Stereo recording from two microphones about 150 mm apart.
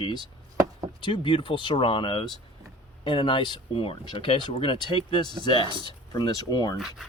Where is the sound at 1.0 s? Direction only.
30° left (ahead or behind).